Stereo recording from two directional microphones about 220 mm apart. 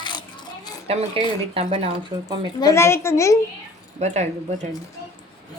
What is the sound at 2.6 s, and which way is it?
Speech, 15° left (ahead or behind).